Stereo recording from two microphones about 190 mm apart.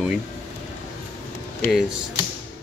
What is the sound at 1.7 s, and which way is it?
Speech, centre (ahead or behind).